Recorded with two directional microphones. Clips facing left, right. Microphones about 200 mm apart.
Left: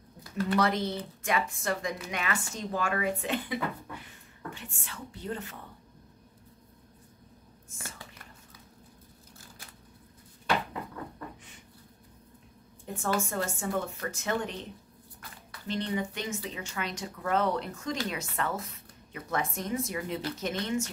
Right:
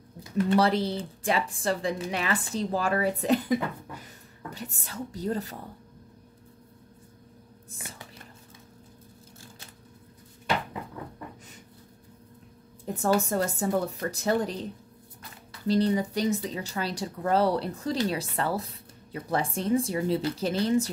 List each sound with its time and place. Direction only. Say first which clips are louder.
0.2 s speech: right 4 dB; 25° right (ahead or behind)
7.7 s speech: right 1 dB; 35° right (ahead or behind)
12.8 s speech: right 6 dB; 40° right (ahead or behind)